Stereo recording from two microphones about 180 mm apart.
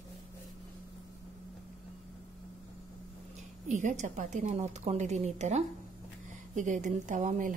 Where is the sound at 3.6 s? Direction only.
45° right (ahead or behind).